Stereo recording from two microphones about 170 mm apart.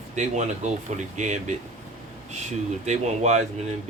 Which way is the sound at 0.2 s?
45° right (ahead or behind).